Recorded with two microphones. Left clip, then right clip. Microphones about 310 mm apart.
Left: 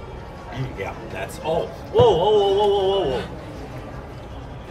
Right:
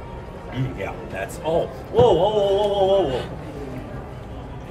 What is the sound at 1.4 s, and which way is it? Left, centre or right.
Speech, centre.